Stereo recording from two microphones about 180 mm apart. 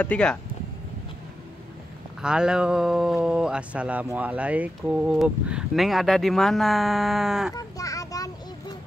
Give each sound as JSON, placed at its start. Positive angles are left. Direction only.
{"t": 0.0, "sound": "speech", "side_deg": 5}
{"t": 2.2, "sound": "speech", "side_deg": -5}
{"t": 7.5, "sound": "a sound", "side_deg": 20}